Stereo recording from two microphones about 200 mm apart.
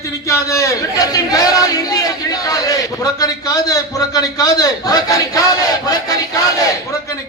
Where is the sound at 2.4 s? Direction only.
20° left (ahead or behind).